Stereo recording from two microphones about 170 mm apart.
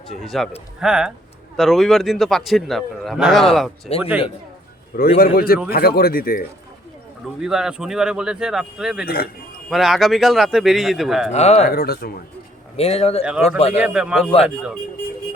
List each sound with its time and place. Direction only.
0.2 s a man's voice: centre (ahead or behind)
3.9 s speech: 35° left (ahead or behind)
4.9 s speech: 60° left (ahead or behind)
7.3 s a man's voice: 5° right (ahead or behind)
9.0 s speech: 65° left (ahead or behind)
9.6 s a man's voice: centre (ahead or behind)
11.3 s speech: 40° left (ahead or behind)
11.7 s speech: 65° left (ahead or behind)
12.7 s speech: 35° left (ahead or behind)
13.7 s a man's voice: 5° right (ahead or behind)